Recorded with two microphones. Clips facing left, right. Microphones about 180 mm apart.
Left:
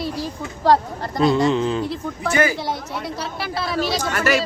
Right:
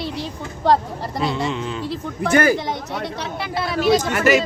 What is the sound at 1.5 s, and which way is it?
Speech, 35° left (ahead or behind).